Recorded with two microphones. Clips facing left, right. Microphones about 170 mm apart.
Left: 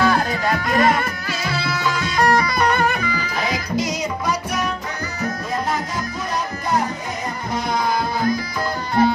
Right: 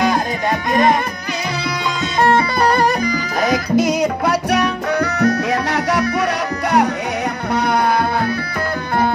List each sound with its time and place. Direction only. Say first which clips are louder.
0.0 s music: right 1 dB; 20° right (ahead or behind)
2.2 s music: right 3 dB; 30° right (ahead or behind); by 6.0 s 75° right (ahead or behind)
7.5 s music: right 5 dB; 65° right (ahead or behind)